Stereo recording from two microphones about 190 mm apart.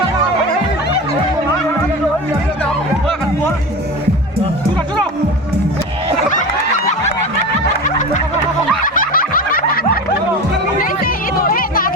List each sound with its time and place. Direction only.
7.9 s snicker: 40° left (ahead or behind)
8.8 s a sound: 45° left (ahead or behind)
10.8 s chatter: 50° left (ahead or behind)